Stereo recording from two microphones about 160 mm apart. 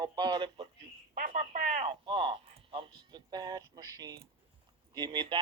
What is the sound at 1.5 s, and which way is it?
Speech, 50° right (ahead or behind).